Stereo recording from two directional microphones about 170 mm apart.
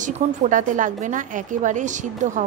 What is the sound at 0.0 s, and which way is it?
Speech, 50° right (ahead or behind).